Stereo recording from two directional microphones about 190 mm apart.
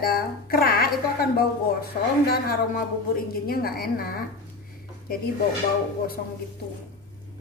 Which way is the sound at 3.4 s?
55° left (ahead or behind).